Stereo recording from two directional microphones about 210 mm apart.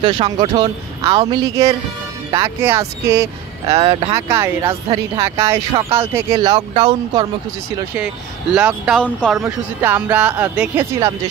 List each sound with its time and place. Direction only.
0.0 s a man's voice: 25° right (ahead or behind)
3.6 s a man's voice: 30° right (ahead or behind)
4.3 s speech: 10° right (ahead or behind)
8.5 s speech: 5° right (ahead or behind)